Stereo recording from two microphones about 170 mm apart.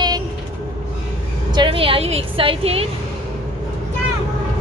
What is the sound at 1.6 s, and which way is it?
A woman's voice, 30° right (ahead or behind).